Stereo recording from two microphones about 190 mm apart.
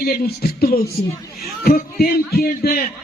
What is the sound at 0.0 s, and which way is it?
Speech, 50° left (ahead or behind).